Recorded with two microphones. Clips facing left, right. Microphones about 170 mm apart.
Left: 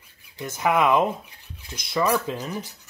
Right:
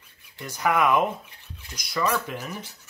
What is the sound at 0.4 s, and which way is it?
Speech, 20° left (ahead or behind).